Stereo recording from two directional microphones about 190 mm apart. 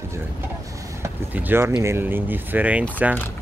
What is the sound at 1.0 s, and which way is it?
Speech, 10° right (ahead or behind).